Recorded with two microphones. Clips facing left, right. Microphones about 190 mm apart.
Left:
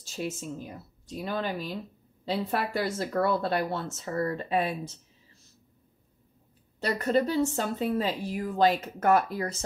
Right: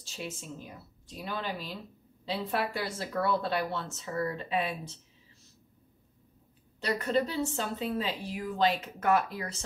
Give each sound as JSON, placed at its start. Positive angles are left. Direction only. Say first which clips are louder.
{"t": 0.1, "sound": "a woman's voice", "louder": "left 6 dB", "side_deg": 45}
{"t": 6.8, "sound": "a woman's voice", "louder": "left 3 dB", "side_deg": 45}